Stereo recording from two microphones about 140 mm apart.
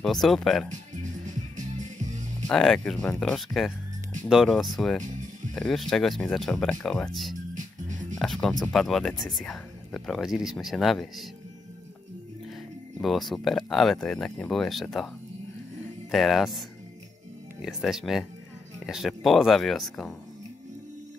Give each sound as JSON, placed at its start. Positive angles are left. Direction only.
{"t": 0.0, "sound": "speech", "side_deg": 0}
{"t": 1.8, "sound": "music", "side_deg": -60}
{"t": 2.4, "sound": "speech", "side_deg": 5}
{"t": 8.2, "sound": "speech", "side_deg": 5}
{"t": 13.0, "sound": "speech", "side_deg": 0}
{"t": 16.1, "sound": "speech", "side_deg": 0}